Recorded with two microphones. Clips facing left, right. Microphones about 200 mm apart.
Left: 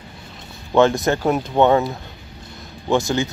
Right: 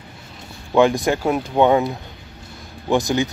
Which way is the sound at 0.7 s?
10° right (ahead or behind).